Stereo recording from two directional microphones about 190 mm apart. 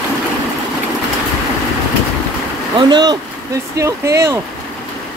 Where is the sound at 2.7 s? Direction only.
25° right (ahead or behind).